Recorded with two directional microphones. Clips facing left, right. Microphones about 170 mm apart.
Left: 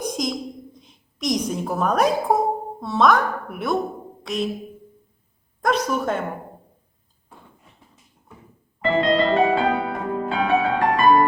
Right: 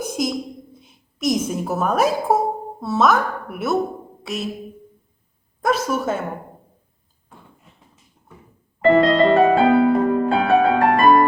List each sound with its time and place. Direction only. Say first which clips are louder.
0.0 s a sound: right 2 dB; 5° right (ahead or behind)
2.8 s a woman's voice: even; 5° right (ahead or behind)
4.2 s music: left 3 dB; 5° right (ahead or behind)
5.6 s a woman's voice: right 1 dB; 5° right (ahead or behind)
8.8 s music: right 5 dB; 40° right (ahead or behind)